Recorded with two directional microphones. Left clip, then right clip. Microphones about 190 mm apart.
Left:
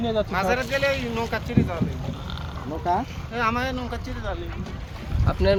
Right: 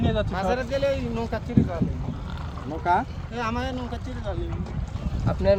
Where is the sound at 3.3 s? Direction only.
15° right (ahead or behind).